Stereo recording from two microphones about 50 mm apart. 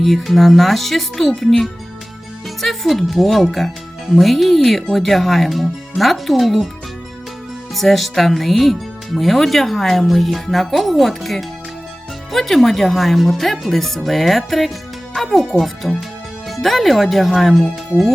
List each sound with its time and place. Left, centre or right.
0.0 s speech: centre
7.8 s speech: centre